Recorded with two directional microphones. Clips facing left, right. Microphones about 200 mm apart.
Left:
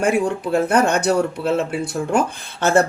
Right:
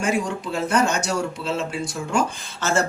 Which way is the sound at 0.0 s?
60° left (ahead or behind).